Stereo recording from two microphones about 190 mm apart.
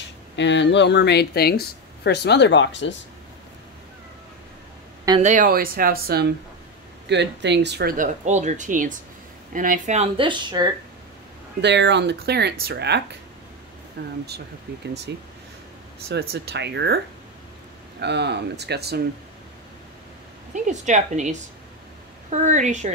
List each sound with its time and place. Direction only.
0.4 s speech: 70° left (ahead or behind)
5.2 s speech: 45° right (ahead or behind)
7.1 s speech: 65° right (ahead or behind)
8.0 s speech: 40° right (ahead or behind); by 10.7 s 25° right (ahead or behind)
11.6 s speech: 65° right (ahead or behind)
18.0 s speech: 65° right (ahead or behind)
20.5 s speech: 40° right (ahead or behind)